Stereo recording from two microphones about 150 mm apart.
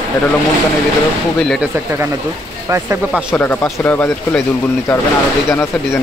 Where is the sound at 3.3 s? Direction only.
10° left (ahead or behind).